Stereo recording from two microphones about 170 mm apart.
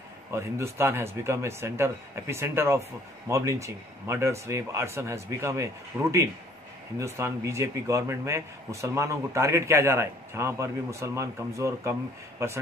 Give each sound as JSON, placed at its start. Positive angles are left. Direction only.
{"t": 0.3, "sound": "speech", "side_deg": -15}